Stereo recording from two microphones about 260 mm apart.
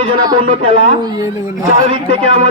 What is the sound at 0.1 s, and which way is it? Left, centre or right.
Speech, centre.